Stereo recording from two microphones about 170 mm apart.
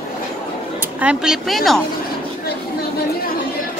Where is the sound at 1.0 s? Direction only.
5° right (ahead or behind).